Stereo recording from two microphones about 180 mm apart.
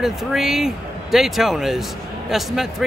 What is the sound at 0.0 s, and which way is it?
Speech, centre (ahead or behind).